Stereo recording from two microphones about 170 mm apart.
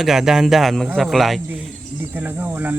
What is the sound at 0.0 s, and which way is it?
Speech, centre (ahead or behind).